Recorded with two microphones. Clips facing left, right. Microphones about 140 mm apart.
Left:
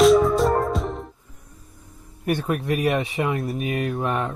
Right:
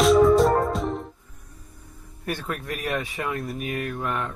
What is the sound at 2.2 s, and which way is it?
Speech, 20° left (ahead or behind).